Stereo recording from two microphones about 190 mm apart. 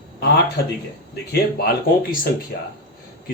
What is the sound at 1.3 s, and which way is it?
Speech, 55° left (ahead or behind).